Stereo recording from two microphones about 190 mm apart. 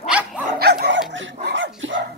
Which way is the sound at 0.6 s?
55° right (ahead or behind).